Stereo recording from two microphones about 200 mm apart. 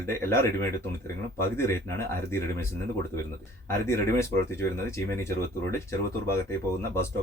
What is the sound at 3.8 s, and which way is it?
Speech, 15° left (ahead or behind).